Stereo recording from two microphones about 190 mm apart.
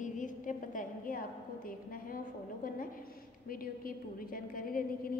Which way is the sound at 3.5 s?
50° left (ahead or behind).